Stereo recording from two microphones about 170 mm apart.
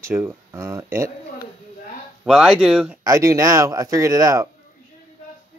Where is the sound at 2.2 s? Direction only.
Centre (ahead or behind).